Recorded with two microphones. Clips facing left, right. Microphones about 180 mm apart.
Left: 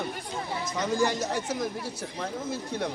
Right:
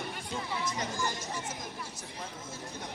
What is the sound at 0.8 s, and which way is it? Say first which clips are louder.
Speech: left 9 dB; 65° left (ahead or behind).